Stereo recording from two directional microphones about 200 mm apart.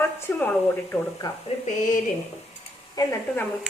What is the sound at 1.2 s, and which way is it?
Speech, 30° left (ahead or behind).